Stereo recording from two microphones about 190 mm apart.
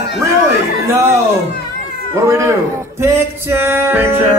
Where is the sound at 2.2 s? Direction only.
15° right (ahead or behind).